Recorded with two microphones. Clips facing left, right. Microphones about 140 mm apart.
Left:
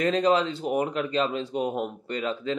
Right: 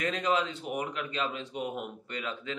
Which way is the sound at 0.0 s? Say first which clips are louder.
Left 7 dB; 30° left (ahead or behind).